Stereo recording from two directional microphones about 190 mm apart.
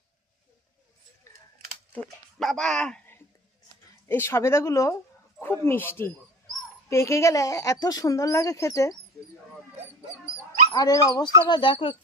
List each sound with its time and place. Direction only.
1.3 s a sound: 15° left (ahead or behind)
2.4 s speech: centre (ahead or behind); by 9.0 s 15° left (ahead or behind)
10.7 s speech: 20° left (ahead or behind)